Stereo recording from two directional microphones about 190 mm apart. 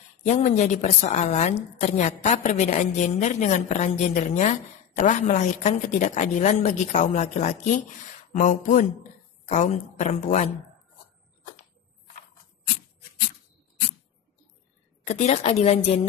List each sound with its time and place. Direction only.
0.3 s a woman's voice: 40° left (ahead or behind)
15.0 s a woman's voice: 35° left (ahead or behind)